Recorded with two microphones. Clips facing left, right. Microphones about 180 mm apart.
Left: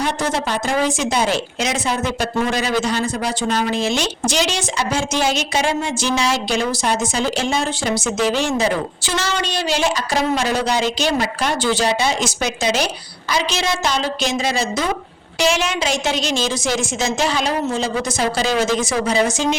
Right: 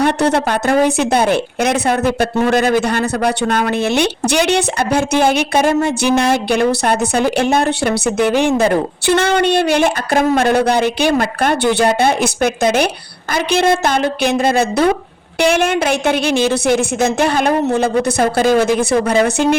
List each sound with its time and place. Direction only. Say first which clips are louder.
0.0 s speech: right 7 dB; 60° right (ahead or behind)